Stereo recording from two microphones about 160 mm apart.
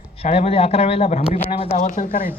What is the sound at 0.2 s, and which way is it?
A man's voice, 40° left (ahead or behind).